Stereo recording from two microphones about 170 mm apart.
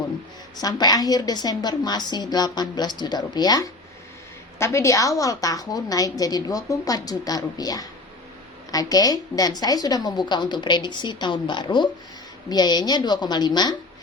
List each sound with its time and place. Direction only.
0.5 s a woman's voice: 25° left (ahead or behind)